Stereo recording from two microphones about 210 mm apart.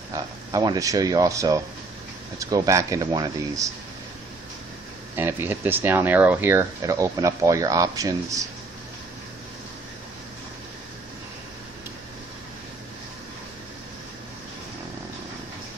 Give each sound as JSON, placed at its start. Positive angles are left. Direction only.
{"t": 0.1, "sound": "speech", "side_deg": -15}
{"t": 5.1, "sound": "speech", "side_deg": -10}